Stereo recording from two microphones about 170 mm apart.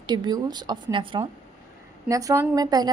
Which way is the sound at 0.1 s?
25° right (ahead or behind).